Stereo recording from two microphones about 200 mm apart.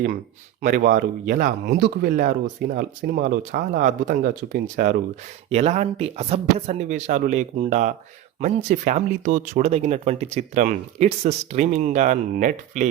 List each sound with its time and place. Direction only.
0.6 s speech: 45° right (ahead or behind)
5.5 s speech: 35° right (ahead or behind)